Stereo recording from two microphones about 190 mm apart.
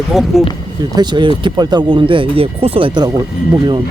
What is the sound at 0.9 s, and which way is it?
Speech, 25° right (ahead or behind).